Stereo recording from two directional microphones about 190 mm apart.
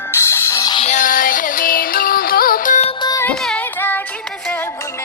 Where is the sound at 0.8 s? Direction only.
40° left (ahead or behind).